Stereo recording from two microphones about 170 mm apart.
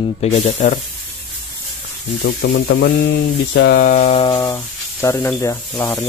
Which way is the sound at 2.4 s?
90° left.